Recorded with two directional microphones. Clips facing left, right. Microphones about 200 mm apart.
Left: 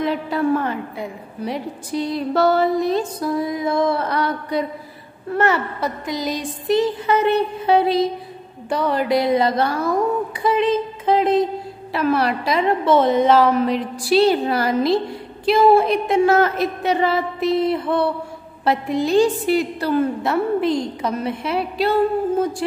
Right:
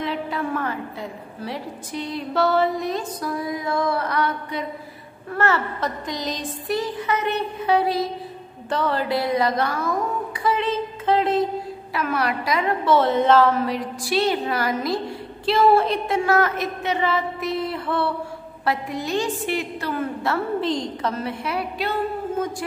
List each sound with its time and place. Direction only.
0.3 s music: 35° left (ahead or behind)
0.9 s a woman's voice: 15° left (ahead or behind)
1.9 s music: 40° left (ahead or behind)
5.3 s a woman's voice: 15° left (ahead or behind)
6.7 s a woman's voice: 25° left (ahead or behind)
8.6 s a woman's voice: 15° left (ahead or behind); by 9.9 s 30° left (ahead or behind)
10.4 s a sound: 20° left (ahead or behind)
11.9 s a woman's voice: 30° left (ahead or behind)
15.4 s a woman's voice: 10° left (ahead or behind)
16.3 s a woman's voice: 30° left (ahead or behind)
18.7 s music: 30° left (ahead or behind)
20.2 s a woman's voice: 10° left (ahead or behind); by 22.8 s 30° left (ahead or behind)